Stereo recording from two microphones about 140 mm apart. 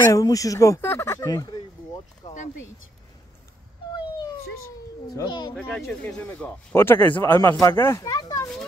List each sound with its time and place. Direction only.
0.0 s speech: 25° left (ahead or behind)
5.1 s speech: 30° left (ahead or behind)
5.7 s a man's voice: centre (ahead or behind); by 8.5 s 25° left (ahead or behind)